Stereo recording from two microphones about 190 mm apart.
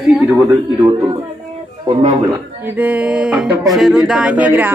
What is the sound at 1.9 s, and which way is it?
Speech, 30° right (ahead or behind).